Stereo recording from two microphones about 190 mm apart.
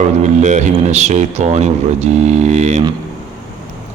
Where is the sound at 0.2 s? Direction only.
40° right (ahead or behind).